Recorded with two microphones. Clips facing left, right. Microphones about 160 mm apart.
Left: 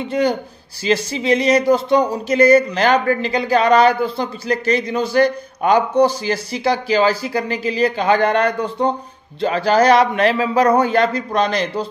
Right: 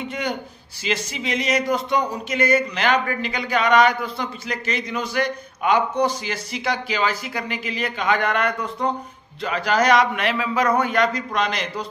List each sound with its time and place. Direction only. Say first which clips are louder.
0.1 s speech: left 9 dB; 35° left (ahead or behind)